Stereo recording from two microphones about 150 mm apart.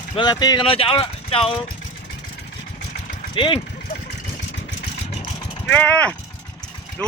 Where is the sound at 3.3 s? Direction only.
30° left (ahead or behind).